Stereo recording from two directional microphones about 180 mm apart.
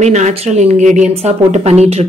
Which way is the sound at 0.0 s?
40° right (ahead or behind).